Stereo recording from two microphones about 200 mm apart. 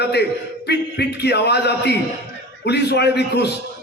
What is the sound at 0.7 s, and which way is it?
A man's voice, 55° left (ahead or behind).